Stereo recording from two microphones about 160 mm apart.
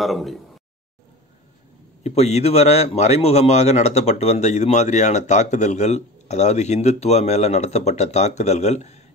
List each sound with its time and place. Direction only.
0.0 s speech: centre (ahead or behind)
2.0 s speech: 40° left (ahead or behind)